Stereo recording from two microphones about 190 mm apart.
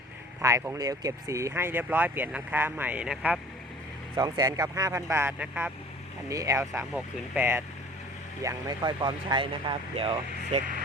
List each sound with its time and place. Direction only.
0.4 s speech: 15° right (ahead or behind)
4.2 s speech: 20° right (ahead or behind)